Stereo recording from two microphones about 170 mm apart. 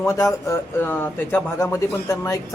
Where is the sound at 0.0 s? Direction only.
20° left (ahead or behind).